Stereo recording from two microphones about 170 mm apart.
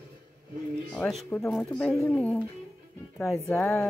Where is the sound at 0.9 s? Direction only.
5° left (ahead or behind).